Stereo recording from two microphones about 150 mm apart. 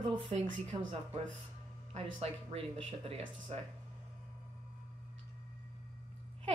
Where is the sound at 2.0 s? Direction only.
40° right (ahead or behind).